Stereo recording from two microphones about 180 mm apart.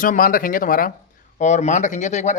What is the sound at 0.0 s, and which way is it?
Speech, 50° left (ahead or behind).